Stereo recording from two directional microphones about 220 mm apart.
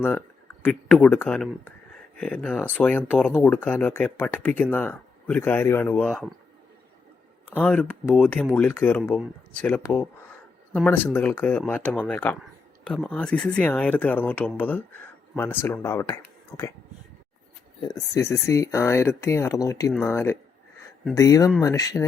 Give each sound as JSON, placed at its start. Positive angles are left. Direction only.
{"t": 0.6, "sound": "speech", "side_deg": 5}
{"t": 7.5, "sound": "speech", "side_deg": 5}
{"t": 17.8, "sound": "speech", "side_deg": 15}